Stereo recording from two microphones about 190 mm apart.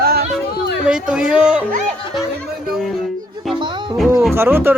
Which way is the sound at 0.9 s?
5° right (ahead or behind).